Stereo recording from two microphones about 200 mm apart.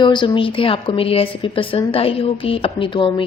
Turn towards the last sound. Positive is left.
turn(degrees=25)  # may be behind; listen again after turning